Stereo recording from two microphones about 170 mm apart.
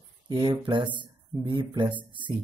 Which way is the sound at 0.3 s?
25° right (ahead or behind).